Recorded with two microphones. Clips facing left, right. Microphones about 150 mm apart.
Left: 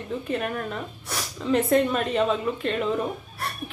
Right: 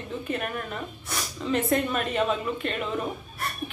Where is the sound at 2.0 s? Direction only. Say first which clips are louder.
Left 2 dB; 35° left (ahead or behind).